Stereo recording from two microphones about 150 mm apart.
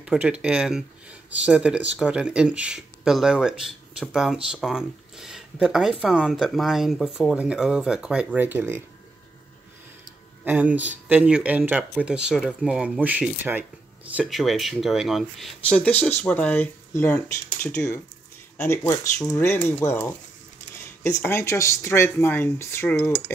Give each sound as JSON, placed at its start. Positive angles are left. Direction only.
{"t": 0.0, "sound": "speech", "side_deg": -5}
{"t": 10.4, "sound": "speech", "side_deg": -10}
{"t": 14.2, "sound": "speech", "side_deg": 0}